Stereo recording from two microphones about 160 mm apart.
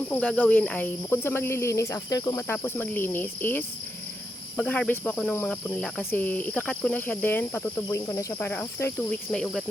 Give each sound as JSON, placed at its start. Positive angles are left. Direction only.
{"t": 0.1, "sound": "speech", "side_deg": 10}
{"t": 8.4, "sound": "speech", "side_deg": 10}